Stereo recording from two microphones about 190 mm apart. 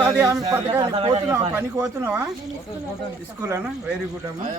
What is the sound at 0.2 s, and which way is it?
A man's voice, 15° right (ahead or behind).